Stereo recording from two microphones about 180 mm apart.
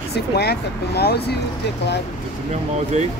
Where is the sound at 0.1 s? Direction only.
65° left (ahead or behind).